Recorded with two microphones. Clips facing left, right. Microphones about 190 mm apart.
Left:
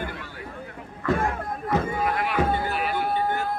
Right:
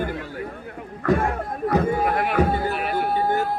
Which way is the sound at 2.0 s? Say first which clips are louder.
Right 4 dB; 50° right (ahead or behind).